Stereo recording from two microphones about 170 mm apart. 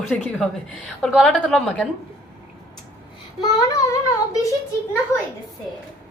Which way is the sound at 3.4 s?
20° left (ahead or behind).